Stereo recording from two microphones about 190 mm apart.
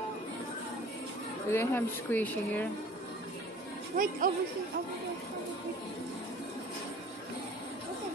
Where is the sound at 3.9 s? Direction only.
45° right (ahead or behind).